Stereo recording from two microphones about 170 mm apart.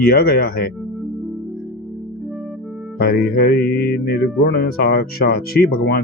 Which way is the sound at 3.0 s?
65° left (ahead or behind).